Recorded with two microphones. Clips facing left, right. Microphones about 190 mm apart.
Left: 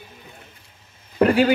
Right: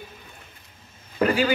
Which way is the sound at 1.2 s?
60° left (ahead or behind).